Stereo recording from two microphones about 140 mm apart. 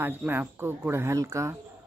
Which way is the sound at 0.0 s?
15° right (ahead or behind).